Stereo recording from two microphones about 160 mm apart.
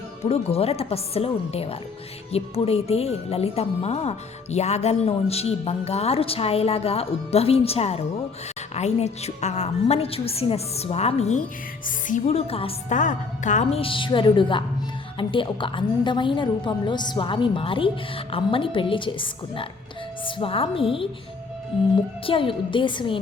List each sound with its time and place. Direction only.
0.3 s a woman's voice: 40° left (ahead or behind)
12.9 s a woman's voice: 50° left (ahead or behind); by 21.1 s 35° left (ahead or behind)
22.3 s a woman's voice: 35° left (ahead or behind)